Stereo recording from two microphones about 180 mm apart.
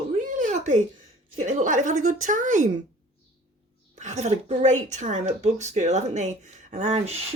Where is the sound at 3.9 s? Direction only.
40° right (ahead or behind).